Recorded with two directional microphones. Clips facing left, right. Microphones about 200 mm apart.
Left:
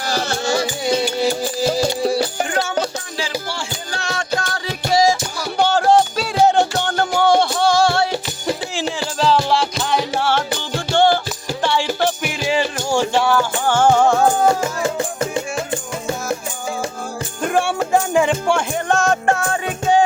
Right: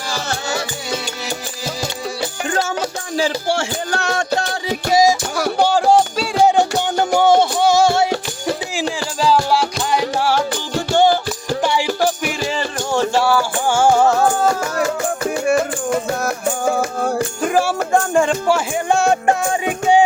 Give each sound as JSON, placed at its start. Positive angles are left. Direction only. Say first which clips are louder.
{"t": 3.5, "sound": "music", "louder": "right 8 dB", "side_deg": -65}
{"t": 5.5, "sound": "music", "louder": "even", "side_deg": -10}
{"t": 9.2, "sound": "music", "louder": "right 1 dB", "side_deg": -5}
{"t": 16.2, "sound": "music", "louder": "right 5 dB", "side_deg": -60}
{"t": 17.4, "sound": "music", "louder": "left 1 dB", "side_deg": 0}